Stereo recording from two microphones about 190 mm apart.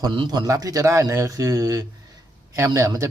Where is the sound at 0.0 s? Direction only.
25° right (ahead or behind).